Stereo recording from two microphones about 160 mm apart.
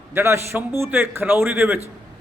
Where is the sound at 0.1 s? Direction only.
15° right (ahead or behind).